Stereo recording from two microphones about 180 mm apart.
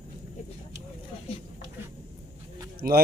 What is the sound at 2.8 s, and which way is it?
Speech, 55° right (ahead or behind).